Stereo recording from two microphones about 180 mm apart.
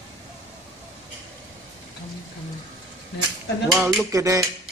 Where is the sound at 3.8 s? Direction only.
5° right (ahead or behind).